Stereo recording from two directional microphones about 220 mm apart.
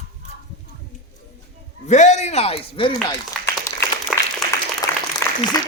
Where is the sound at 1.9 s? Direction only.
30° left (ahead or behind).